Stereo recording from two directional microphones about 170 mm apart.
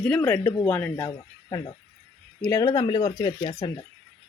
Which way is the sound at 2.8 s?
30° left (ahead or behind).